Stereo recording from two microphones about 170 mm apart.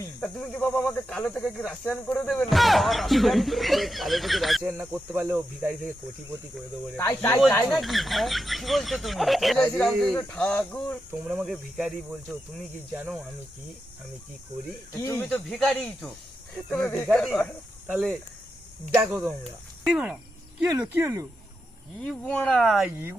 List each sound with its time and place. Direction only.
0.2 s speech: 5° left (ahead or behind)
4.6 s speech: 10° right (ahead or behind)
6.9 s speech: 10° left (ahead or behind)
7.7 s speech: centre (ahead or behind)
11.1 s speech: 5° right (ahead or behind)
14.9 s speech: 15° left (ahead or behind)
15.4 s speech: 5° left (ahead or behind); by 21.2 s 15° right (ahead or behind)
22.2 s speech: 10° left (ahead or behind)
22.9 s speech: 10° right (ahead or behind)